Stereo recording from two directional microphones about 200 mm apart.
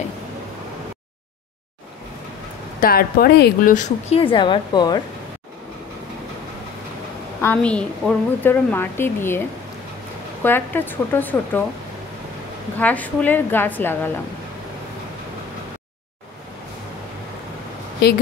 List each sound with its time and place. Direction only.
2.8 s a woman's voice: 50° left (ahead or behind); by 5.0 s 20° left (ahead or behind)
7.4 s a woman's voice: 5° left (ahead or behind)
10.4 s a woman's voice: 10° left (ahead or behind)
12.7 s a woman's voice: 10° left (ahead or behind)